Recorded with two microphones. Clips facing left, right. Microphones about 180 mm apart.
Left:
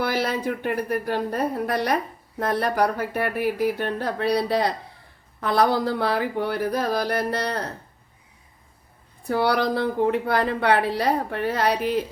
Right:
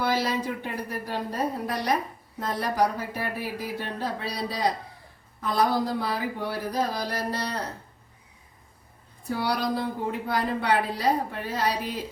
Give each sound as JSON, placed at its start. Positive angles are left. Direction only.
{"t": 0.0, "sound": "speech", "side_deg": 60}
{"t": 9.2, "sound": "a woman's voice", "side_deg": 65}